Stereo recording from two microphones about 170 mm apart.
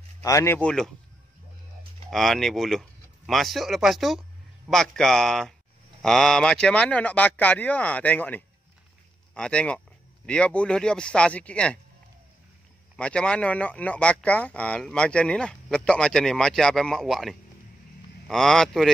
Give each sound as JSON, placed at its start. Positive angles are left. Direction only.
{"t": 0.2, "sound": "speech", "side_deg": 20}
{"t": 0.6, "sound": "speech", "side_deg": 5}
{"t": 2.0, "sound": "speech", "side_deg": 0}
{"t": 12.9, "sound": "speech", "side_deg": 5}